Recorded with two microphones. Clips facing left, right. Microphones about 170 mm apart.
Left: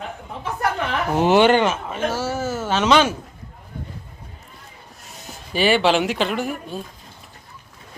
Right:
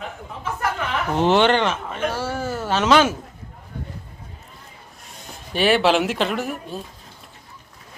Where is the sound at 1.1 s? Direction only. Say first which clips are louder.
Left 2 dB; 10° left (ahead or behind).